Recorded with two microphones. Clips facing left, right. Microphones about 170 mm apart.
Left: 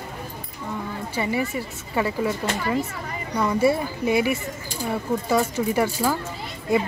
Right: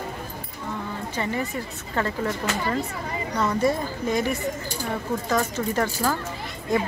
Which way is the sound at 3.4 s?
10° left (ahead or behind).